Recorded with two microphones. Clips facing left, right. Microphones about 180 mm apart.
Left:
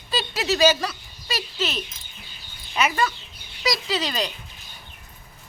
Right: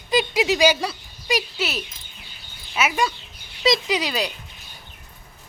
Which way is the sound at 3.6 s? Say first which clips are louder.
Right 5 dB; 25° right (ahead or behind).